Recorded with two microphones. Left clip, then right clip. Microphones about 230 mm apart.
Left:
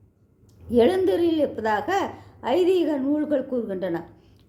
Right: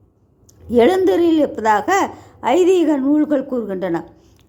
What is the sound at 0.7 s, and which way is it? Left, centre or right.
Speech, right.